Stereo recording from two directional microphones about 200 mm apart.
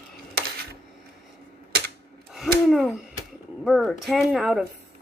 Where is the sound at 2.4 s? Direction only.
Centre (ahead or behind).